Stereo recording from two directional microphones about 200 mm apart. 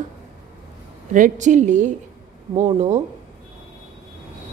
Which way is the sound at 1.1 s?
40° right (ahead or behind).